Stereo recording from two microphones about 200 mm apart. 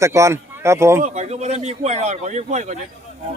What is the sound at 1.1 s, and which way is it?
A man's voice, 35° right (ahead or behind).